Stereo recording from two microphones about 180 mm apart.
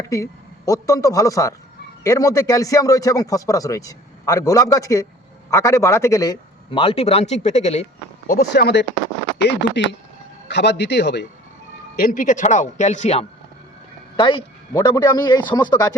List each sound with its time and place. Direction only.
0.0 s a man's voice: 20° left (ahead or behind)
6.7 s speech: 30° left (ahead or behind)
8.3 s a man's voice: 60° left (ahead or behind)
11.9 s speech: 50° left (ahead or behind)
14.2 s speech: 25° left (ahead or behind)